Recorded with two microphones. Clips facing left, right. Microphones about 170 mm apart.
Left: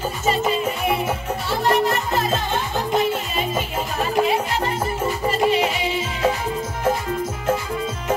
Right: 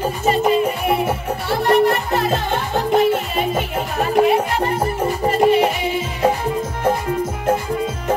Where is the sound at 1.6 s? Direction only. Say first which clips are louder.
Right 5 dB; 60° right (ahead or behind).